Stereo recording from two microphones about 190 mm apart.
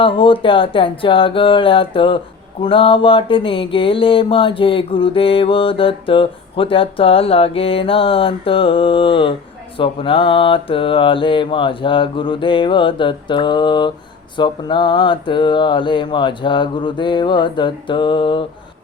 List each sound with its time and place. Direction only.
0.0 s mantra: 25° left (ahead or behind)